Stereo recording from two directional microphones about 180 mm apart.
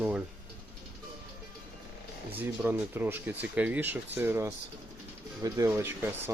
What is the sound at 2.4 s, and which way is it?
Speech, 10° right (ahead or behind).